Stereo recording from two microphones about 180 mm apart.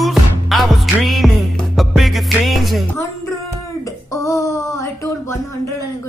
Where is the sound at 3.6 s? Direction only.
20° left (ahead or behind).